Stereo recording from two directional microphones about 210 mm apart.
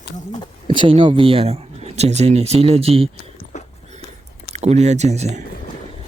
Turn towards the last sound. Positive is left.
turn(degrees=-30)  # may be behind; listen again after turning